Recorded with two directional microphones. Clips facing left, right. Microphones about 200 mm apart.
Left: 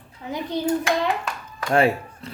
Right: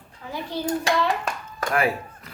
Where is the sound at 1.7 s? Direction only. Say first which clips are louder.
Left 5 dB; 25° left (ahead or behind).